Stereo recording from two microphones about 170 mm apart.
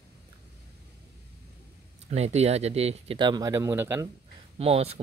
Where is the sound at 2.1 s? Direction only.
40° right (ahead or behind); by 4.1 s 15° right (ahead or behind).